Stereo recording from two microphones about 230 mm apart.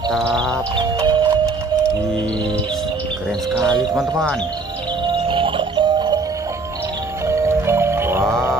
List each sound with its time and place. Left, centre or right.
0.1 s speech: centre
0.5 s music: centre
3.8 s speech: centre
5.3 s music: right
7.2 s music: centre